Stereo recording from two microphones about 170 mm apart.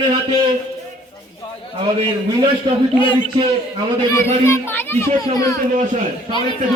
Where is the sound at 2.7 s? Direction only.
25° right (ahead or behind).